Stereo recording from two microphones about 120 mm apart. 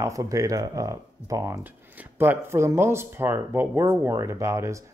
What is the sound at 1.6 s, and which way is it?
Speech, 15° right (ahead or behind).